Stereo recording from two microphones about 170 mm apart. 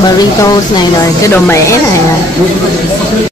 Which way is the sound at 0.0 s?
25° left (ahead or behind).